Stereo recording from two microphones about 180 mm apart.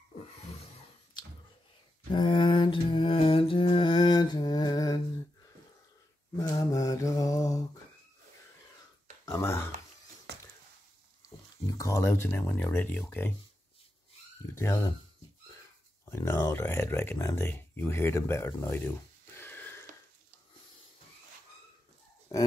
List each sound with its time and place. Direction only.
1.1 s a sound: 25° left (ahead or behind)
2.1 s mantra: 25° left (ahead or behind)
6.3 s mantra: 20° left (ahead or behind)
9.2 s a sound: 15° left (ahead or behind)
11.8 s speech: 15° left (ahead or behind)
14.5 s speech: 15° left (ahead or behind)
16.1 s speech: 15° left (ahead or behind)
22.3 s burping: 20° left (ahead or behind)